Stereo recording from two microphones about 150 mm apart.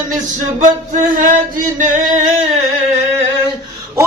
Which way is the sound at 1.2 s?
60° right (ahead or behind).